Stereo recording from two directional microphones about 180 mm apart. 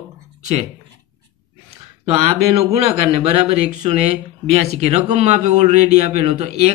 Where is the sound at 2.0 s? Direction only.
35° right (ahead or behind).